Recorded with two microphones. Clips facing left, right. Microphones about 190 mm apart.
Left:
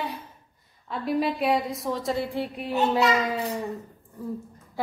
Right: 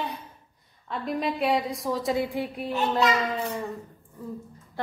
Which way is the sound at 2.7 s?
10° left (ahead or behind).